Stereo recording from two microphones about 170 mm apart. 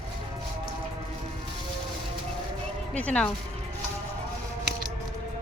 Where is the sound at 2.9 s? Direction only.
10° left (ahead or behind).